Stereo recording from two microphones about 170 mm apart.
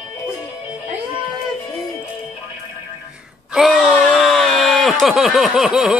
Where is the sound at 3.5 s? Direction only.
Centre (ahead or behind).